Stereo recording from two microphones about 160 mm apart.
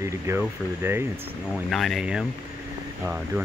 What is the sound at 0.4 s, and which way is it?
Speech, 15° right (ahead or behind).